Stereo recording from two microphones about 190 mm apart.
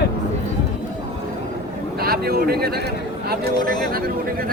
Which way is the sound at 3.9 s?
50° right (ahead or behind).